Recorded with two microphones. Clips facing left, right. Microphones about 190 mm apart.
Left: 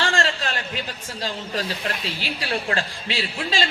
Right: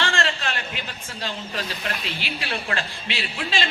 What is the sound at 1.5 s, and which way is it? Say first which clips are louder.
A man's voice: left 3 dB; 35° left (ahead or behind).